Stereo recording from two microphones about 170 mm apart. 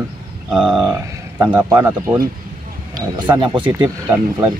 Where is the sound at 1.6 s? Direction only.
20° right (ahead or behind).